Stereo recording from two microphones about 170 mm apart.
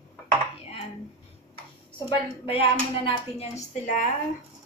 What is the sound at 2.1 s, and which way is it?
A woman's voice, 30° left (ahead or behind).